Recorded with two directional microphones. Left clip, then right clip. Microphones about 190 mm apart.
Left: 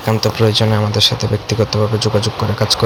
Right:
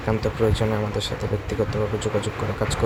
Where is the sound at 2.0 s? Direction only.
45° left (ahead or behind).